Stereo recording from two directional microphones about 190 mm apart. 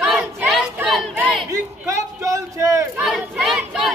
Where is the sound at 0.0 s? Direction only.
Centre (ahead or behind).